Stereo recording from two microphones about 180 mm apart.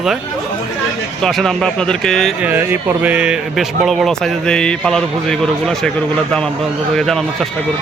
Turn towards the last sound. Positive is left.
turn(degrees=0)  # may be behind; listen again after turning